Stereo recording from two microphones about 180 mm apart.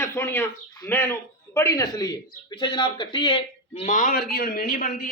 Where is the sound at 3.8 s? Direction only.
45° left (ahead or behind).